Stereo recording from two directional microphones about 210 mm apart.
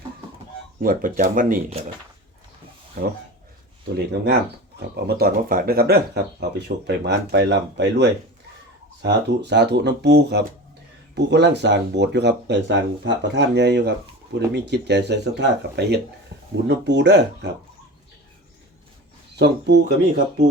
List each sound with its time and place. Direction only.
0.8 s speech: 40° right (ahead or behind)
3.0 s speech: 50° right (ahead or behind)
19.4 s speech: 55° right (ahead or behind)